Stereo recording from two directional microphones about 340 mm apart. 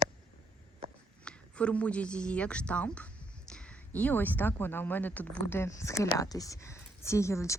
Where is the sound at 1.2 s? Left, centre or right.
Centre.